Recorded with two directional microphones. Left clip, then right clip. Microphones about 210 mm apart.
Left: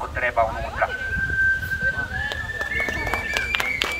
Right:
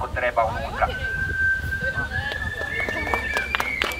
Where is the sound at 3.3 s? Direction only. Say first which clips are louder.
Left 1 dB; 35° left (ahead or behind).